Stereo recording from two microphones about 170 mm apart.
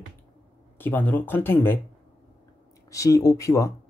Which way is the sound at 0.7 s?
10° left (ahead or behind).